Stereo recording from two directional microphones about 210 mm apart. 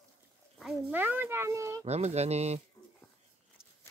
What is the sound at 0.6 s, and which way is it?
A child's voice, 5° right (ahead or behind).